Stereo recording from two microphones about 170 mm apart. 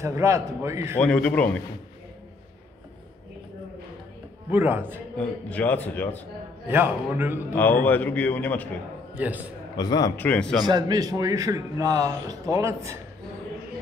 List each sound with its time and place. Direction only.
0.0 s a man's voice: 20° right (ahead or behind)
0.9 s a man's voice: 10° left (ahead or behind)
4.5 s a man's voice: 10° right (ahead or behind)
5.1 s a man's voice: 10° left (ahead or behind)
6.7 s a man's voice: 10° right (ahead or behind)
7.8 s a man's voice: 10° left (ahead or behind)
9.1 s a man's voice: 10° right (ahead or behind)
9.8 s a man's voice: 25° left (ahead or behind)
10.1 s a man's voice: 10° left (ahead or behind)
10.6 s a man's voice: 25° right (ahead or behind)